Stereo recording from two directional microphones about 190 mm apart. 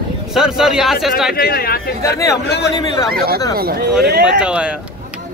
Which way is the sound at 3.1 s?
50° right (ahead or behind).